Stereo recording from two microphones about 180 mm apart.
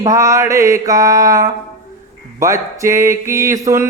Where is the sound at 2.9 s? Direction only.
15° right (ahead or behind).